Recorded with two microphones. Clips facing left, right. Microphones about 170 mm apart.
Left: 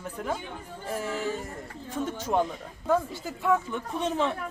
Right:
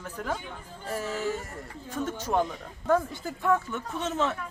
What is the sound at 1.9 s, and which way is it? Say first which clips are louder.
A woman's voice: left 1 dB; 10° left (ahead or behind).